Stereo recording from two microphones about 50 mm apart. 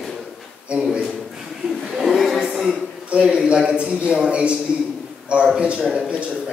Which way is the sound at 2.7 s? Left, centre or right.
Centre.